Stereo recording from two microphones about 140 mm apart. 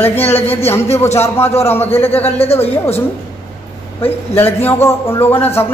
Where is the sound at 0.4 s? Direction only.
45° left (ahead or behind).